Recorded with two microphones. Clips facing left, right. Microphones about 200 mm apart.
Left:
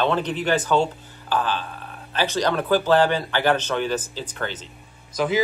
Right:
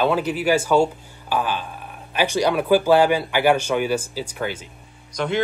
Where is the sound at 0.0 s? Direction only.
10° right (ahead or behind).